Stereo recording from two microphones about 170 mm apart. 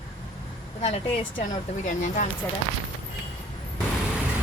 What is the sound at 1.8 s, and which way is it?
Speech, 45° left (ahead or behind).